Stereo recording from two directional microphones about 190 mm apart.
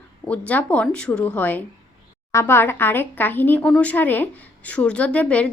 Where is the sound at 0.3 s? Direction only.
5° left (ahead or behind).